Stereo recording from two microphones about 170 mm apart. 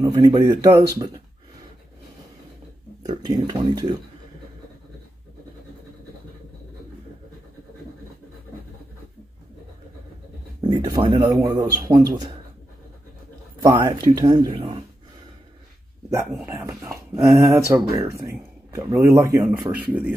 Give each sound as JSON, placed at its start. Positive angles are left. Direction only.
{"t": 0.0, "sound": "a man's voice", "side_deg": -25}
{"t": 3.0, "sound": "a man's voice", "side_deg": -25}
{"t": 10.6, "sound": "a man's voice", "side_deg": -25}
{"t": 13.6, "sound": "a man's voice", "side_deg": -20}
{"t": 16.8, "sound": "speech", "side_deg": -15}